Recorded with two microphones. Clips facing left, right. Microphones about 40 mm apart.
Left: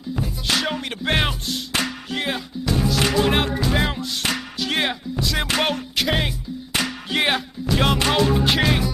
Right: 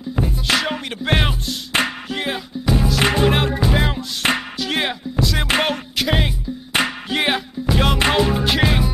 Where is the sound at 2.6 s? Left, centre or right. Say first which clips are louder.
Right 3 dB; centre.